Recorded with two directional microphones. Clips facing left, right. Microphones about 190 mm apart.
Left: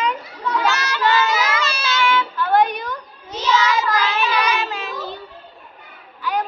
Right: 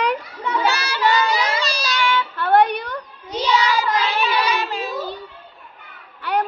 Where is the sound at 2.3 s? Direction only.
60° right (ahead or behind).